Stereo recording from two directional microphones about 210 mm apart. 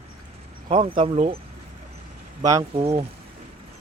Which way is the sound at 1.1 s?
35° right (ahead or behind).